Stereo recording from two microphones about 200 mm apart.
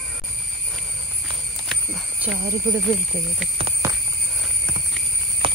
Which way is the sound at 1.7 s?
5° right (ahead or behind).